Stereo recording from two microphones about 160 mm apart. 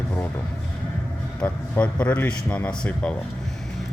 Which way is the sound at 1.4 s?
10° left (ahead or behind).